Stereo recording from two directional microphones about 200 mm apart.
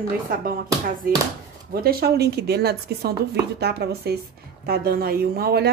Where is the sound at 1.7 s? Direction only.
50° right (ahead or behind).